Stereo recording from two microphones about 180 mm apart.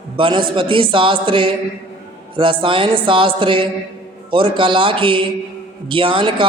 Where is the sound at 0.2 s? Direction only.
25° right (ahead or behind).